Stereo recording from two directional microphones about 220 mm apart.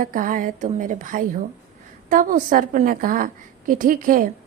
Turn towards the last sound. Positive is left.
turn(degrees=-35)  # may be behind; listen again after turning